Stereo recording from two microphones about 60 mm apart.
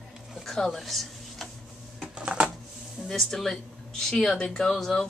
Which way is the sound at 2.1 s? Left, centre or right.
Centre.